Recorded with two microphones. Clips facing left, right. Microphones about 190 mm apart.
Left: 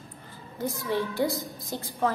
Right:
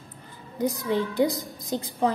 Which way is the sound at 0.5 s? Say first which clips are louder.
Right 4 dB; 15° right (ahead or behind).